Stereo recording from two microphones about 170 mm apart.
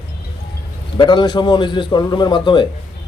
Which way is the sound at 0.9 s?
25° left (ahead or behind).